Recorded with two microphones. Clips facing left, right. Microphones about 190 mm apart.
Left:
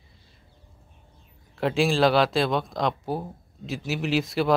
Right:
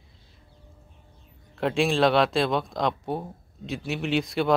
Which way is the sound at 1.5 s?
Centre (ahead or behind).